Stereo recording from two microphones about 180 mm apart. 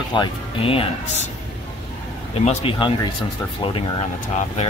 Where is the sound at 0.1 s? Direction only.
30° left (ahead or behind).